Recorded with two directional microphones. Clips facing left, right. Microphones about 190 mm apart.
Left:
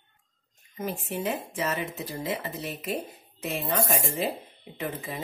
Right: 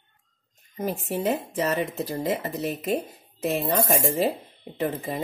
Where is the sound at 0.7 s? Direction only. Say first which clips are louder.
Right 4 dB; 40° right (ahead or behind).